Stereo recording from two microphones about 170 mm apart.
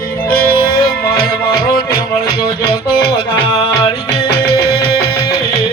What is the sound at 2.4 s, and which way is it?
Music, 30° left (ahead or behind).